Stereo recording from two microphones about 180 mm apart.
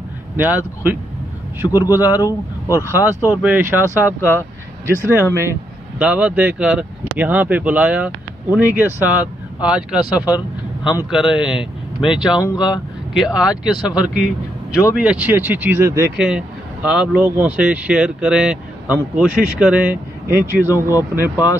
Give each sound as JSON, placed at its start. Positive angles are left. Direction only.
{"t": 0.4, "sound": "speech", "side_deg": -10}
{"t": 1.7, "sound": "speech", "side_deg": 20}
{"t": 2.0, "sound": "speech", "side_deg": -10}
{"t": 2.2, "sound": "speech", "side_deg": 15}
{"t": 2.9, "sound": "speech", "side_deg": -10}
{"t": 3.8, "sound": "speech", "side_deg": 15}
{"t": 5.3, "sound": "speech", "side_deg": -15}
{"t": 12.4, "sound": "speech", "side_deg": 20}
{"t": 13.1, "sound": "a man's voice", "side_deg": -5}